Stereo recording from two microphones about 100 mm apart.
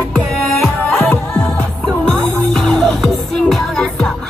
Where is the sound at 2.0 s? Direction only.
5° left (ahead or behind).